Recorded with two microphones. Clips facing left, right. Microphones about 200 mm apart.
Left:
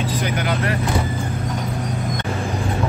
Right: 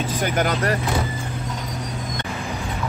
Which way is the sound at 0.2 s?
45° right (ahead or behind).